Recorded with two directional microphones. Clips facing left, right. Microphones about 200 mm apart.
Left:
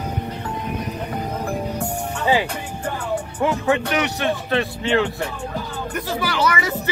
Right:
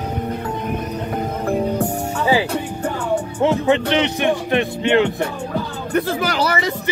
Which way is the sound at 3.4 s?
25° right (ahead or behind).